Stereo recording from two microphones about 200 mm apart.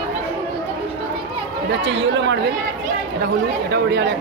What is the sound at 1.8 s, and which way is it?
Speech, 65° right (ahead or behind).